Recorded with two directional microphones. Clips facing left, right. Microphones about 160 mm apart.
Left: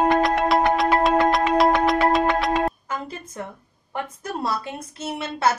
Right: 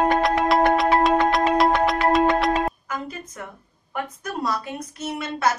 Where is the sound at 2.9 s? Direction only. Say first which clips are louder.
Even; 30° left (ahead or behind).